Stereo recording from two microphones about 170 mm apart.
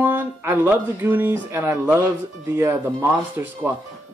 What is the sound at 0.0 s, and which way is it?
Speech, 10° right (ahead or behind).